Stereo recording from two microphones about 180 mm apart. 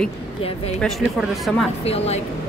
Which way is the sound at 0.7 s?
Centre (ahead or behind).